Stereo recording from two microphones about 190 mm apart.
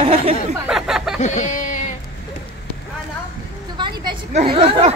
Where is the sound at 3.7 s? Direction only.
25° right (ahead or behind).